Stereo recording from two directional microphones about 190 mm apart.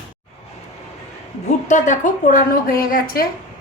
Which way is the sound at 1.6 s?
40° left (ahead or behind).